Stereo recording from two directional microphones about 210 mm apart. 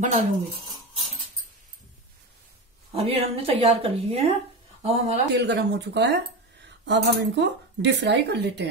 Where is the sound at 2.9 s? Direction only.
30° right (ahead or behind).